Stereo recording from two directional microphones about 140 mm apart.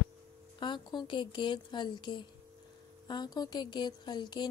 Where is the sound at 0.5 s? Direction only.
30° left (ahead or behind).